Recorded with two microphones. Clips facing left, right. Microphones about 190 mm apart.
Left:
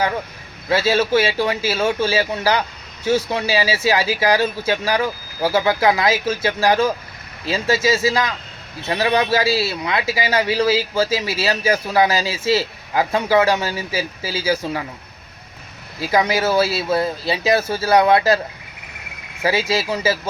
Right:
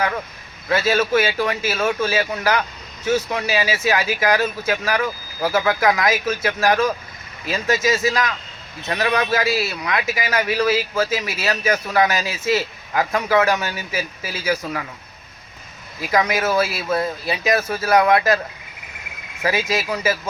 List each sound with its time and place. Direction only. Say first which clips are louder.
0.7 s speech: left 1 dB; 30° left (ahead or behind)
16.0 s speech: left 2 dB; 30° left (ahead or behind)
19.4 s speech: left 2 dB; 30° left (ahead or behind)